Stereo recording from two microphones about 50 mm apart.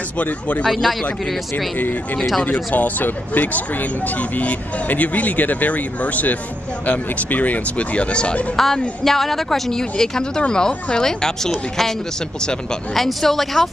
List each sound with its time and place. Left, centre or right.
0.2 s speech: left
0.7 s speech: centre
2.1 s speech: centre
2.4 s speech: left
8.5 s speech: centre
12.9 s speech: centre